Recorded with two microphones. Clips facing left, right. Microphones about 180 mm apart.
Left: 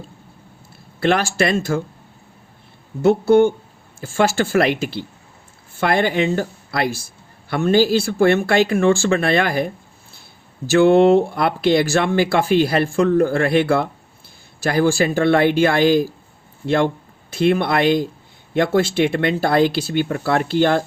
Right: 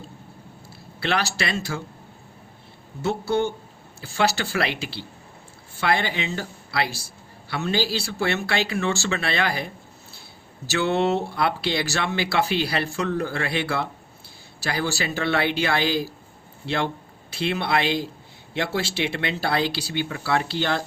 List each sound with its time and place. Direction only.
0.9 s speech: 50° left (ahead or behind)
3.0 s speech: 55° left (ahead or behind)